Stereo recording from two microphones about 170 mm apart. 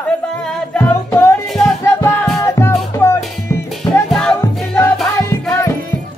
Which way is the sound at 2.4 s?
15° left (ahead or behind).